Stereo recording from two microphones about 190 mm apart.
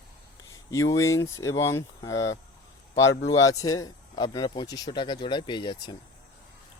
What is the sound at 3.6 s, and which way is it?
Speech, 20° left (ahead or behind).